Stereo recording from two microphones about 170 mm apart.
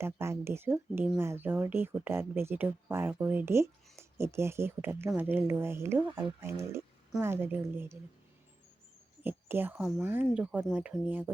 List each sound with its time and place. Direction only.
0.0 s speech: 15° right (ahead or behind)
9.2 s a woman's voice: 10° right (ahead or behind)